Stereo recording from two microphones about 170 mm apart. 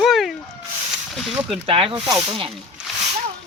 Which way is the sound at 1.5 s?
35° right (ahead or behind).